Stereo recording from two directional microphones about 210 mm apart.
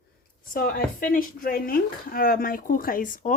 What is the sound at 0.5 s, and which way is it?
Speech, 40° left (ahead or behind).